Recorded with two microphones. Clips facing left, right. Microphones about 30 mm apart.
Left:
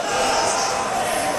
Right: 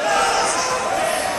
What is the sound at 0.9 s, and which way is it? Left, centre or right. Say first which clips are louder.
Music: right 2 dB; centre.